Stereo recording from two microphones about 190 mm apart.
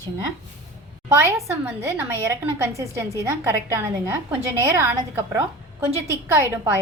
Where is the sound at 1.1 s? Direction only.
15° right (ahead or behind).